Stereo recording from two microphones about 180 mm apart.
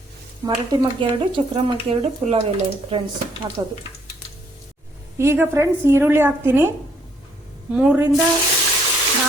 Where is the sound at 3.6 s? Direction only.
20° right (ahead or behind).